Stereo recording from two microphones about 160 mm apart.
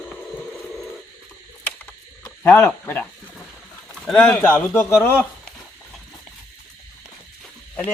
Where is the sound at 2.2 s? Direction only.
15° left (ahead or behind).